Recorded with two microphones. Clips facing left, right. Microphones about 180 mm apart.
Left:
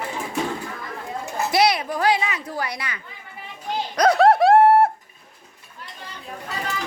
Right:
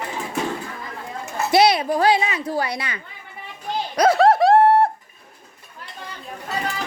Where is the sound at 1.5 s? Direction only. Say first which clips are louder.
Right 4 dB; 25° right (ahead or behind).